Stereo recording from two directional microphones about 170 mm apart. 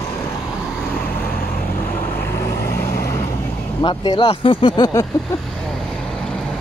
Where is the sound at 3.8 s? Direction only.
25° left (ahead or behind).